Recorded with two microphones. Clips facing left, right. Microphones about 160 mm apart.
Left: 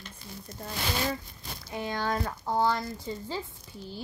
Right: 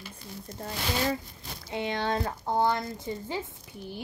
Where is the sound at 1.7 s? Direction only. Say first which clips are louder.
Right 2 dB; 25° right (ahead or behind).